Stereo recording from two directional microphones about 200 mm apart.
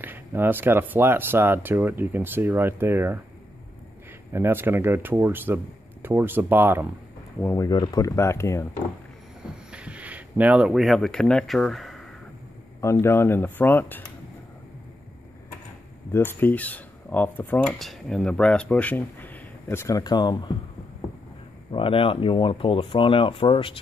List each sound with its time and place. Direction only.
0.0 s speech: 10° right (ahead or behind)
4.3 s speech: 10° right (ahead or behind)
7.4 s speech: 15° left (ahead or behind)
9.7 s speech: 5° right (ahead or behind)
12.8 s speech: 15° left (ahead or behind)
16.1 s speech: 10° left (ahead or behind)
21.7 s speech: 25° left (ahead or behind)